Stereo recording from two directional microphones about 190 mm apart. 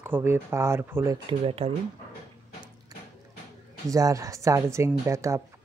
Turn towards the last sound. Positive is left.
turn(degrees=-15)  # may be behind; listen again after turning